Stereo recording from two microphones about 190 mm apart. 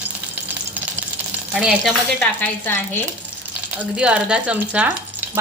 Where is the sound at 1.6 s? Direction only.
5° right (ahead or behind).